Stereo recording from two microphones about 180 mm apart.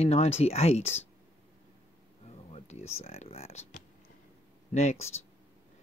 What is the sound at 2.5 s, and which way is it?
Speech, 35° left (ahead or behind).